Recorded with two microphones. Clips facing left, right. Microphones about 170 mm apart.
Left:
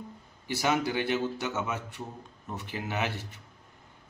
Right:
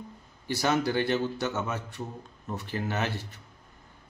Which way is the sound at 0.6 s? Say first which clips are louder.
Right 2 dB; 15° left (ahead or behind).